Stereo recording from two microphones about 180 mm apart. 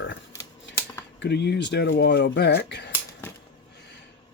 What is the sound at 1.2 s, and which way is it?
Speech, 70° left (ahead or behind).